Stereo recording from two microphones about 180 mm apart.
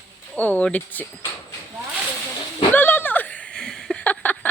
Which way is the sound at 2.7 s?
10° left (ahead or behind).